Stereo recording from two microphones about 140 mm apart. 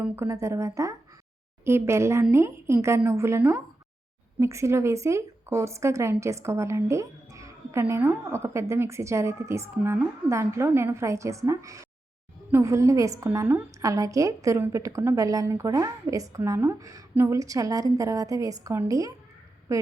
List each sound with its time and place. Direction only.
0.0 s a woman's voice: 20° right (ahead or behind)
19.7 s quack: 20° right (ahead or behind)